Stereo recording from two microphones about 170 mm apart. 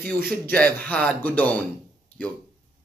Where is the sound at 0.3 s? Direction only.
5° left (ahead or behind).